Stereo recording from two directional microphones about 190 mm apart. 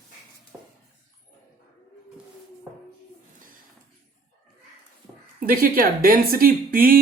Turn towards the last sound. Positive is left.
turn(degrees=-50)  # may be behind; listen again after turning